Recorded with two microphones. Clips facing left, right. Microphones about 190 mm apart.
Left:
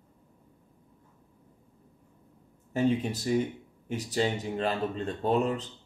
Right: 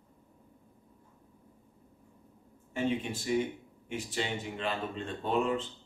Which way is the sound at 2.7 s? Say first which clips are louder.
Left 5 dB; 40° left (ahead or behind).